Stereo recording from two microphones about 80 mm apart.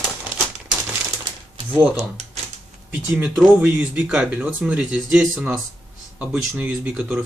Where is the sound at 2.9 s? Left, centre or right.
Centre.